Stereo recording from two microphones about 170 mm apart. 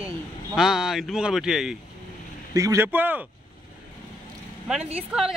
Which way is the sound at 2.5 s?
20° right (ahead or behind).